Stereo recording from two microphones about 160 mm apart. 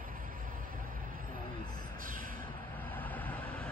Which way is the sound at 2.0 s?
60° right (ahead or behind).